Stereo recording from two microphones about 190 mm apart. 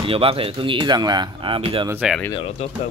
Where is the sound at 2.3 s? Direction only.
30° left (ahead or behind).